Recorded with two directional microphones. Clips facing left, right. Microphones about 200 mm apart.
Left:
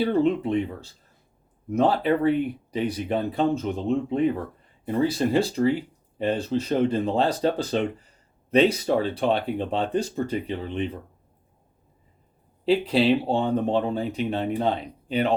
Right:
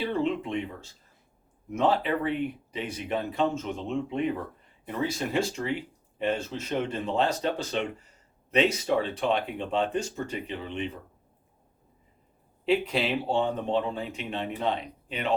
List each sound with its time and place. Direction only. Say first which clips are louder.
0.0 s speech: left 6 dB; 40° left (ahead or behind)
12.6 s speech: left 6 dB; 35° left (ahead or behind)